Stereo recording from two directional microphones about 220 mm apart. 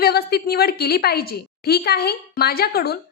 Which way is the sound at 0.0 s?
45° left (ahead or behind).